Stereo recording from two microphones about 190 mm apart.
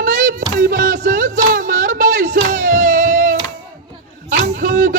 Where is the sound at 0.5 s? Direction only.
50° right (ahead or behind).